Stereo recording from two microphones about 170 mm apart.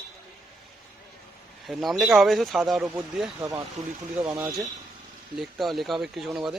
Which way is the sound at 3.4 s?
20° right (ahead or behind).